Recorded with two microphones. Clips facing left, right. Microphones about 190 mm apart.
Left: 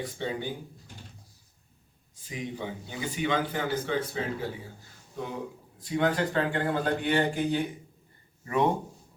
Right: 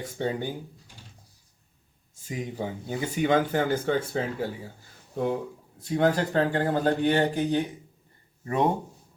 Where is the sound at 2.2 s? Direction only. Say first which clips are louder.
Right 3 dB; 40° right (ahead or behind).